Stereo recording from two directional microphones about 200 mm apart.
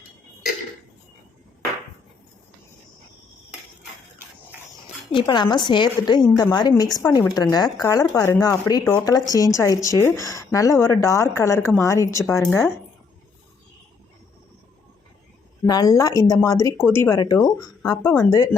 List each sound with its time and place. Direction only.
5.1 s a woman's voice: 20° left (ahead or behind)
15.6 s speech: 20° left (ahead or behind)